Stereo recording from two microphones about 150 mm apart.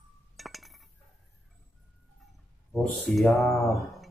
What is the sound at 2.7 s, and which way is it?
Speech, 5° left (ahead or behind).